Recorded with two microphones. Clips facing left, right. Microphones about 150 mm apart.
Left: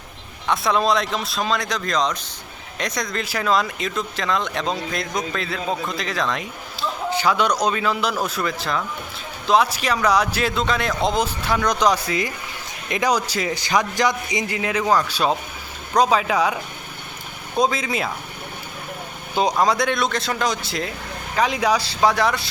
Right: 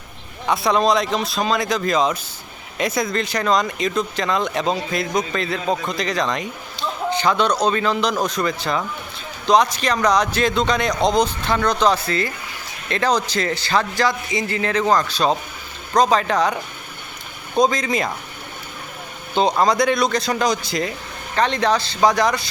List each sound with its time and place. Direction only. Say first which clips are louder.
0.4 s a man's voice: right 2 dB; centre (ahead or behind)
19.3 s a sound: right 2 dB; 10° left (ahead or behind)
19.5 s a man's voice: right 3 dB; centre (ahead or behind)